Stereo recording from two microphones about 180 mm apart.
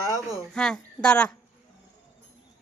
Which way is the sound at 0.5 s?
5° left (ahead or behind).